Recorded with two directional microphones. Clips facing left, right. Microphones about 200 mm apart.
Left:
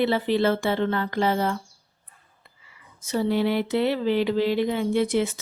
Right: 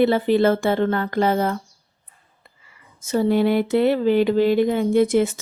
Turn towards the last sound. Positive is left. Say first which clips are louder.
# right 5 dB
turn(degrees=-45)  # may be behind; listen again after turning